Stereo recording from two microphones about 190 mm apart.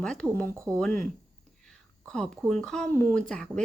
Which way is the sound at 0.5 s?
15° right (ahead or behind).